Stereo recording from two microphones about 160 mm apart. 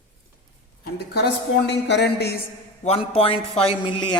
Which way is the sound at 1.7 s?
90° left.